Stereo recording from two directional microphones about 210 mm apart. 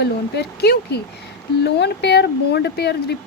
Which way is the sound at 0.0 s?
50° left (ahead or behind).